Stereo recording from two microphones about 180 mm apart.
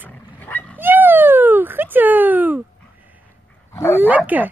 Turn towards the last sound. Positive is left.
turn(degrees=-10)  # may be behind; listen again after turning